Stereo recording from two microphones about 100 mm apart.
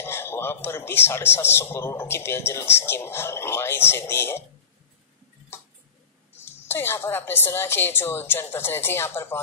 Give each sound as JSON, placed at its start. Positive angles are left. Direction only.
{"t": 0.0, "sound": "a man's voice", "side_deg": 25}
{"t": 6.7, "sound": "a man's voice", "side_deg": 25}